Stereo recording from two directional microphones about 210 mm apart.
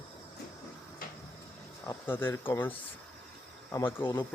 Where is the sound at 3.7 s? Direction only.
10° left (ahead or behind).